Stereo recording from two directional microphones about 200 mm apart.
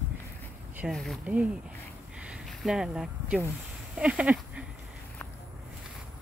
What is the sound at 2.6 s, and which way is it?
Speech, 5° right (ahead or behind).